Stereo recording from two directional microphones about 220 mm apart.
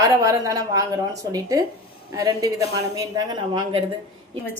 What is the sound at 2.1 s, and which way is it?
A woman's voice, 15° right (ahead or behind).